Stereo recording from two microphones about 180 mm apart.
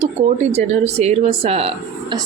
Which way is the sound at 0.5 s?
35° right (ahead or behind).